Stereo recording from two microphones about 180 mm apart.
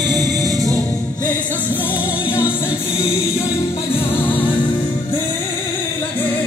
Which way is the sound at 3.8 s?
30° left (ahead or behind).